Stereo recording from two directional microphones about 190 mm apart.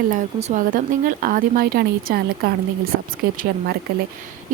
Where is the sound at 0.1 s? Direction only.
40° right (ahead or behind).